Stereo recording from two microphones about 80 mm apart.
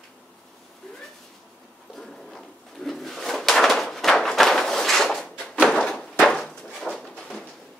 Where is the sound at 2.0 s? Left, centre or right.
Centre.